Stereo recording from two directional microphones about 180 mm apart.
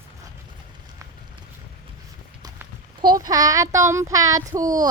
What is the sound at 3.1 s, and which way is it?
A child's voice, 20° right (ahead or behind).